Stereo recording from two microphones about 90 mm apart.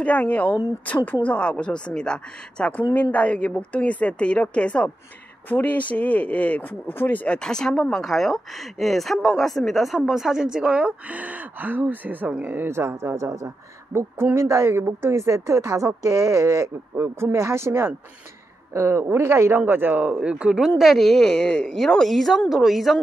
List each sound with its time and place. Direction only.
0.0 s a woman's voice: 15° left (ahead or behind)
7.3 s a woman's voice: 10° left (ahead or behind)